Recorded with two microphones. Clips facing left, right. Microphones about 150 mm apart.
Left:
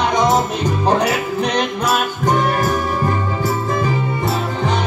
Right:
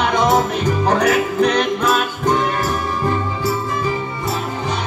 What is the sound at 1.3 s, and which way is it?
Music, 30° left (ahead or behind).